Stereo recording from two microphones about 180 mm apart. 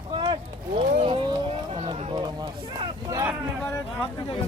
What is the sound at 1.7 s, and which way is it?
Run, 35° right (ahead or behind).